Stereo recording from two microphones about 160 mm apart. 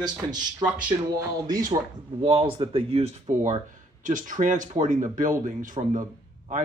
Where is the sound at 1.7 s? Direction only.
35° right (ahead or behind).